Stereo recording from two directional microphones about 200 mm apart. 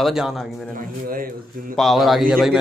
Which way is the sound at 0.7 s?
45° right (ahead or behind).